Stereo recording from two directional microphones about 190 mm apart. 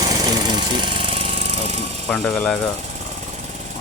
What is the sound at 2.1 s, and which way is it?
Speech, 5° left (ahead or behind).